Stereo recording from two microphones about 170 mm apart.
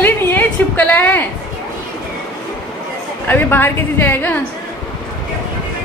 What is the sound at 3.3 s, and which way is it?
A woman's voice, 10° left (ahead or behind).